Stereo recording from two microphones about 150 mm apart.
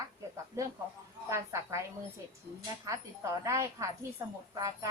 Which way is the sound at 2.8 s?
20° right (ahead or behind).